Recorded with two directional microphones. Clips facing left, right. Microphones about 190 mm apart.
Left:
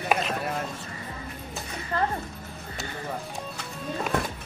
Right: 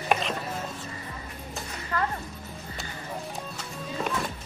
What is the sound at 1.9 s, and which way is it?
Music, 30° left (ahead or behind).